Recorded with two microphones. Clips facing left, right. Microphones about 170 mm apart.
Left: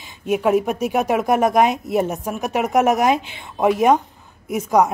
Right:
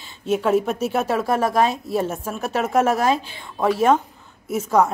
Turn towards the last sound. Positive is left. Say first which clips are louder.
# left 1 dB
turn(degrees=15)  # may be behind; listen again after turning